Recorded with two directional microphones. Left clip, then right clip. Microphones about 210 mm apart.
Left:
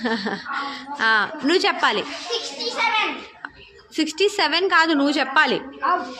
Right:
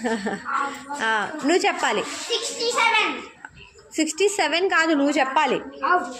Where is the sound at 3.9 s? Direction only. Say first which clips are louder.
Left 1 dB; 10° left (ahead or behind).